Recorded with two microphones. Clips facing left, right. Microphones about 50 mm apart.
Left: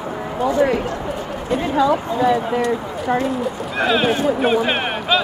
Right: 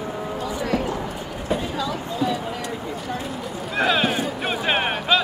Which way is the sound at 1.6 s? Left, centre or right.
Left.